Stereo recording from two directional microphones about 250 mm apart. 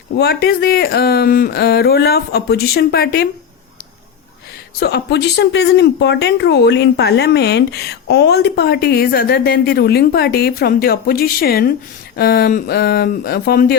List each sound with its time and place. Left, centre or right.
0.2 s speech: left
4.8 s speech: left